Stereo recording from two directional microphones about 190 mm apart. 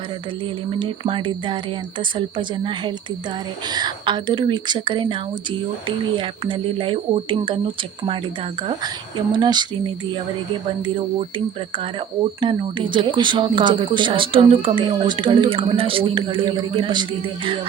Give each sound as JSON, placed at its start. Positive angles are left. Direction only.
{"t": 0.8, "sound": "speech", "side_deg": -25}
{"t": 3.7, "sound": "speech", "side_deg": -20}
{"t": 9.3, "sound": "speech", "side_deg": -25}
{"t": 12.4, "sound": "speech", "side_deg": -25}